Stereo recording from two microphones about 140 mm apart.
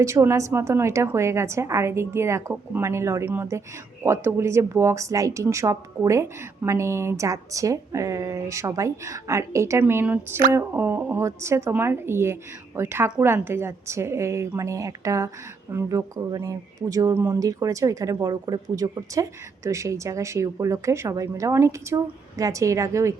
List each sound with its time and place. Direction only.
0.0 s speech: 20° right (ahead or behind)